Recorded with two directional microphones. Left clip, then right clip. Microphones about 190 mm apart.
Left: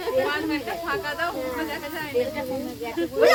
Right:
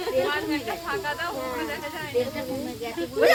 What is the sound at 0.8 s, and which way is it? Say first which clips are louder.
Speech: left 3 dB; 65° left (ahead or behind).